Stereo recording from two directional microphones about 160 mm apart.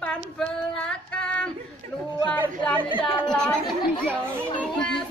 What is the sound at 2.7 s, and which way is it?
Speech, 30° right (ahead or behind).